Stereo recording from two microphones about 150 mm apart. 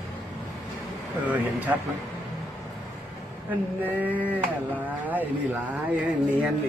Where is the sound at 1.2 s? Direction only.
10° right (ahead or behind).